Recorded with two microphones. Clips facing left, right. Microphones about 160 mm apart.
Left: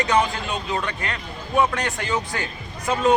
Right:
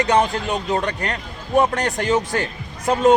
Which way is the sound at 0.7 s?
40° right (ahead or behind).